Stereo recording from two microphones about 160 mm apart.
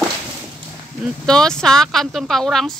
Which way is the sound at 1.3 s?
5° left (ahead or behind).